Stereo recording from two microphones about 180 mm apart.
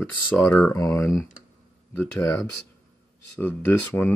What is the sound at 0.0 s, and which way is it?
Speech, 10° left (ahead or behind).